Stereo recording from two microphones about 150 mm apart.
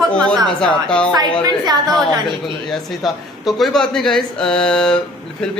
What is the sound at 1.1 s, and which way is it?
Speech, 25° right (ahead or behind).